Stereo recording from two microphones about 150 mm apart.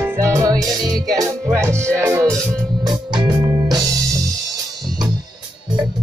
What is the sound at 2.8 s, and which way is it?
Music, 30° right (ahead or behind).